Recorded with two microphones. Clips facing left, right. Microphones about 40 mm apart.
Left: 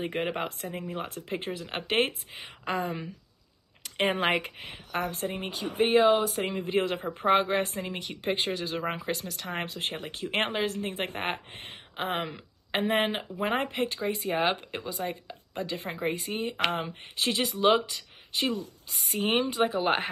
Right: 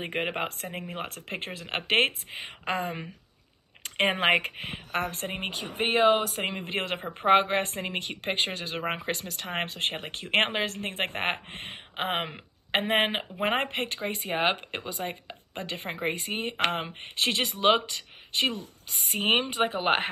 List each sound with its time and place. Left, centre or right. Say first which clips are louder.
0.0 s speech: even; right
7.2 s a woman's voice: right 2 dB; right